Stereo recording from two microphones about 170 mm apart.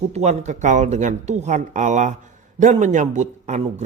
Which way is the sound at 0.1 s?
40° right (ahead or behind).